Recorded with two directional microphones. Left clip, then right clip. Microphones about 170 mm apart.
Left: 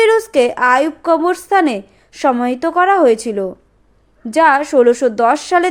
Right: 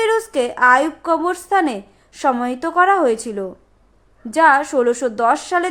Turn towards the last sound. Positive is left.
turn(degrees=20)  # may be behind; listen again after turning